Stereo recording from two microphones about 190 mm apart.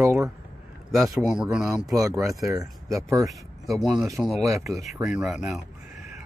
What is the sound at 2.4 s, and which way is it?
Speech, 15° right (ahead or behind).